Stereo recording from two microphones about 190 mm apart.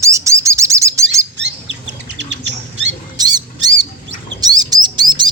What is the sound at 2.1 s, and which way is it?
Bird, 70° right (ahead or behind).